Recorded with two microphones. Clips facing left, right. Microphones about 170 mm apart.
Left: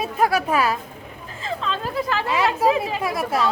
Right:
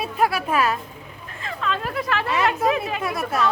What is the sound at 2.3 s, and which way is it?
Speech, 30° left (ahead or behind).